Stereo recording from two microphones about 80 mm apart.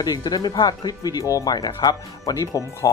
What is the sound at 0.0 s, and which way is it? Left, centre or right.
Speech, left.